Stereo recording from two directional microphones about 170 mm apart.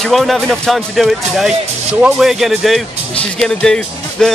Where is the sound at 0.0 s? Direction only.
Centre (ahead or behind).